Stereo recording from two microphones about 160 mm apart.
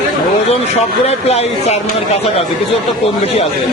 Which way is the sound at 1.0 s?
40° left (ahead or behind).